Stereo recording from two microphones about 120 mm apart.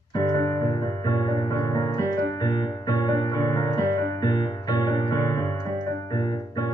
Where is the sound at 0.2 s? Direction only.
30° left (ahead or behind).